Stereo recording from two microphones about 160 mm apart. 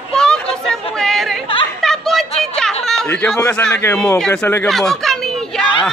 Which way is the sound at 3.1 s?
5° left (ahead or behind).